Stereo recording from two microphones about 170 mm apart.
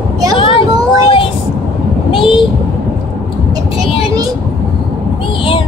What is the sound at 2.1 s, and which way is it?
Child singing, 30° left (ahead or behind).